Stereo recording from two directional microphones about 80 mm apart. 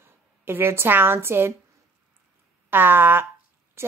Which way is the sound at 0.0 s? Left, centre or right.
Right.